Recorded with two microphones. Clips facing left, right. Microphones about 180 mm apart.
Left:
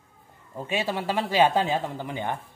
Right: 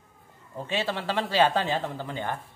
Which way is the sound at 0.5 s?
10° left (ahead or behind).